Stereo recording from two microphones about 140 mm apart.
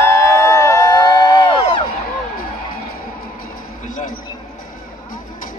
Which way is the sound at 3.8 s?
70° left (ahead or behind).